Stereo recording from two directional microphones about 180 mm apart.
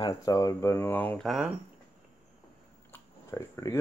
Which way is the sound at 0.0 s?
20° left (ahead or behind).